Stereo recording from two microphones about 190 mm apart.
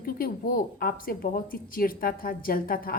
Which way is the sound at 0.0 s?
50° left (ahead or behind).